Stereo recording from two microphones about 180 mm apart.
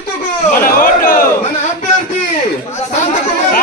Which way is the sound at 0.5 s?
50° left (ahead or behind).